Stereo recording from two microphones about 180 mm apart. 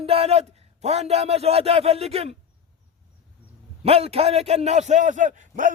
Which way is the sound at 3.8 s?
35° right (ahead or behind).